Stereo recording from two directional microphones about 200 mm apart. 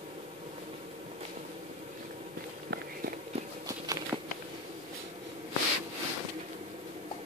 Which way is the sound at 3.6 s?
15° right (ahead or behind).